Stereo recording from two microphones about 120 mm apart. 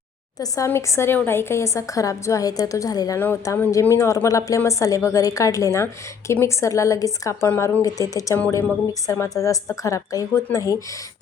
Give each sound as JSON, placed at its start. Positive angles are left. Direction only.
{"t": 0.3, "sound": "a woman's voice", "side_deg": 30}